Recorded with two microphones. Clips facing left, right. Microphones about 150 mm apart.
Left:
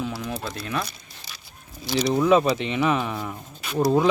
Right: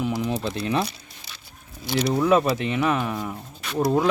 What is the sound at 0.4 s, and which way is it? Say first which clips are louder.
Speech: right 5 dB; 25° right (ahead or behind).